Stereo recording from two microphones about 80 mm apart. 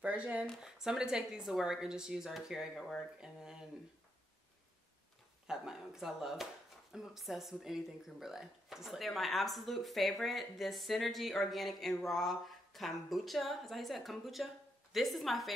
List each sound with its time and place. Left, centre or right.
0.0 s a woman's voice: centre
5.5 s speech: centre